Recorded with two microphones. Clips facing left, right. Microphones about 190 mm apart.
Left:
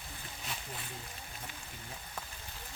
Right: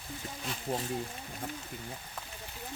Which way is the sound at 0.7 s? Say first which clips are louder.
Right 13 dB; 65° right (ahead or behind).